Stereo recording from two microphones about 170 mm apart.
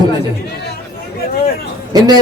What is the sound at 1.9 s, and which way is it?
Speech, 25° right (ahead or behind).